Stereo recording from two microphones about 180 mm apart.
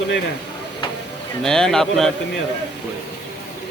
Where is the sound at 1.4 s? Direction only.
5° left (ahead or behind).